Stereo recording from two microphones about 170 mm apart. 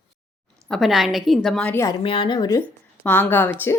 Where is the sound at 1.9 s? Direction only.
25° left (ahead or behind).